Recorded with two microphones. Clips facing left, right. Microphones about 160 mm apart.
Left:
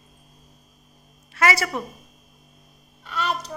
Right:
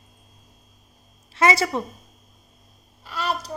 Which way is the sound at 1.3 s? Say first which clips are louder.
Right 2 dB; 25° right (ahead or behind).